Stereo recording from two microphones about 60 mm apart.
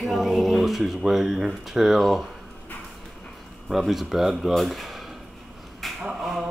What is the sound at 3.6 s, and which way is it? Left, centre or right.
Speech, centre.